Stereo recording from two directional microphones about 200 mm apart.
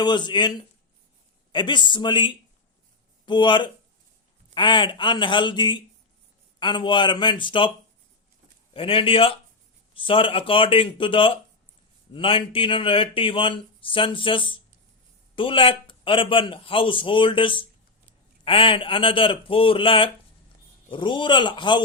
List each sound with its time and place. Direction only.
0.0 s speech: 20° left (ahead or behind)
1.5 s speech: 25° left (ahead or behind)
8.7 s speech: 25° left (ahead or behind)